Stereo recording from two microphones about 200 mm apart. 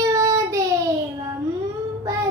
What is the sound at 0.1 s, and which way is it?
Child singing, 15° right (ahead or behind).